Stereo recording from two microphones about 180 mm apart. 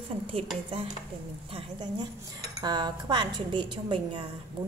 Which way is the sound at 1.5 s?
25° right (ahead or behind).